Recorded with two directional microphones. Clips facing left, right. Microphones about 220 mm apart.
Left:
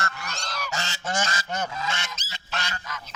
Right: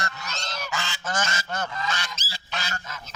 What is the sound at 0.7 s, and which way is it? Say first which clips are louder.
Goose: right 1 dB; 40° left (ahead or behind).